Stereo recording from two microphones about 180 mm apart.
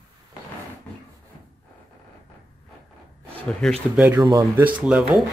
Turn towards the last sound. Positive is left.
turn(degrees=-5)  # may be behind; listen again after turning